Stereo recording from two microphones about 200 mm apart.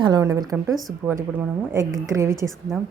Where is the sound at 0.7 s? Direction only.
Centre (ahead or behind).